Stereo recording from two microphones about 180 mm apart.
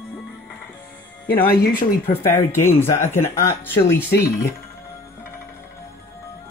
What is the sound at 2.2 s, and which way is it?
Speech, 15° left (ahead or behind).